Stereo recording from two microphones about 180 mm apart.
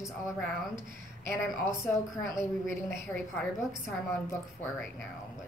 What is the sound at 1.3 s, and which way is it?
Speech, 15° left (ahead or behind).